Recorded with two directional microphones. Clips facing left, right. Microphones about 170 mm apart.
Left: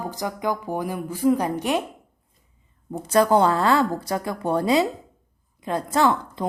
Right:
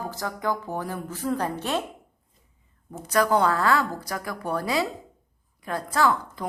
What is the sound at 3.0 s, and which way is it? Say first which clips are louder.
A woman's voice: left 4 dB; 30° left (ahead or behind).